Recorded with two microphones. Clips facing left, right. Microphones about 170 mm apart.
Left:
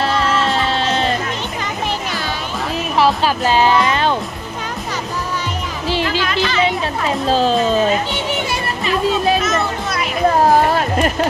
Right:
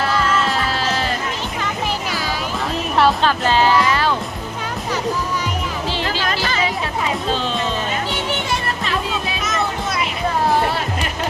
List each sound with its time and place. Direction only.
0.0 s music: 30° left (ahead or behind)
3.2 s speech: 15° left (ahead or behind)
7.3 s speech: 40° left (ahead or behind)
10.4 s music: 45° left (ahead or behind)